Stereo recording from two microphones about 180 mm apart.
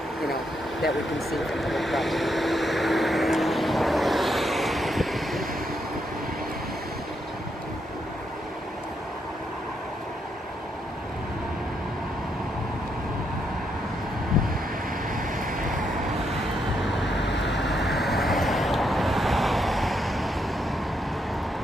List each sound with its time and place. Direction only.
0.3 s vehicle: centre (ahead or behind)
15.1 s vehicle: 50° right (ahead or behind)
16.8 s vehicle: centre (ahead or behind)